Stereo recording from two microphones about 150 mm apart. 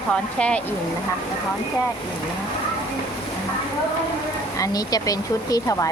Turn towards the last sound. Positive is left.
turn(degrees=20)  # may be behind; listen again after turning